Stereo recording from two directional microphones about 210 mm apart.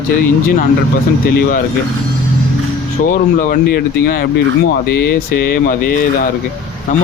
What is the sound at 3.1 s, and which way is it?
Speech, 40° left (ahead or behind).